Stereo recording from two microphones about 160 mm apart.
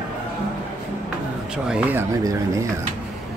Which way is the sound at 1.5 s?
5° right (ahead or behind).